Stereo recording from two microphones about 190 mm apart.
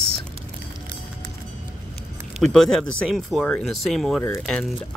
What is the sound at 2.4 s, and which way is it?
Speech, centre (ahead or behind).